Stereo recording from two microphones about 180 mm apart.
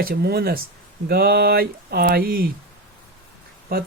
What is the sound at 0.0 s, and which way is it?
Speech, 60° right (ahead or behind).